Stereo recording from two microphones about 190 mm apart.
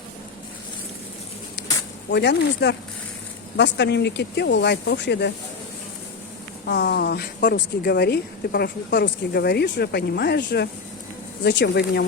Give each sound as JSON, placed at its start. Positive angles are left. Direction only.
{"t": 2.1, "sound": "speech", "side_deg": 65}
{"t": 6.7, "sound": "speech", "side_deg": 60}